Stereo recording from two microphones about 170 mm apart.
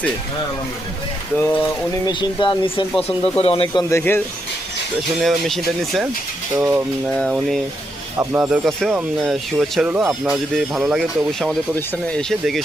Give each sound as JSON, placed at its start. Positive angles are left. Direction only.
{"t": 1.4, "sound": "speech", "side_deg": 10}
{"t": 2.0, "sound": "speech", "side_deg": 25}
{"t": 3.8, "sound": "speech", "side_deg": 15}
{"t": 5.2, "sound": "speech", "side_deg": 0}
{"t": 6.6, "sound": "speech", "side_deg": -15}
{"t": 7.1, "sound": "speech", "side_deg": 0}
{"t": 8.2, "sound": "speech", "side_deg": -15}
{"t": 10.0, "sound": "speech", "side_deg": -15}
{"t": 10.3, "sound": "speech", "side_deg": 0}